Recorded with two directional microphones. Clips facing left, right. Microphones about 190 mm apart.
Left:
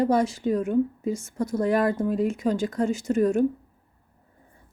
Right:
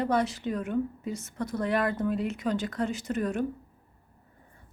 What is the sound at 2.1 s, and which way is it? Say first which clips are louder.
Speech: left 5 dB; 45° left (ahead or behind).